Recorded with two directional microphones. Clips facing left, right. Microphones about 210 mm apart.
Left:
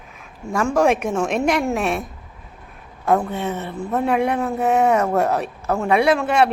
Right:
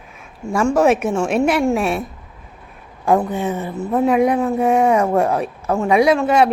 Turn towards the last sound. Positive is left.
turn(degrees=0)  # may be behind; listen again after turning